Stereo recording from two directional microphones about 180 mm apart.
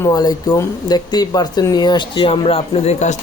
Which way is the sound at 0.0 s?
20° left (ahead or behind).